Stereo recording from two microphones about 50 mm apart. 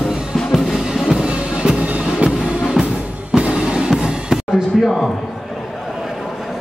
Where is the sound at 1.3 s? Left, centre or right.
Right.